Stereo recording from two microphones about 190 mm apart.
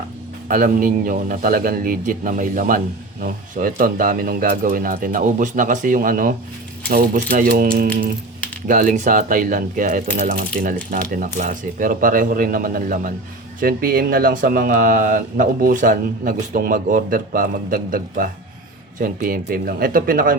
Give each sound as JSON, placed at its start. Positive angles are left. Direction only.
{"t": 0.4, "sound": "a man's voice", "side_deg": -45}